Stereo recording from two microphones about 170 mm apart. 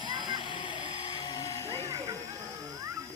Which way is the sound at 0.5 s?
30° left (ahead or behind).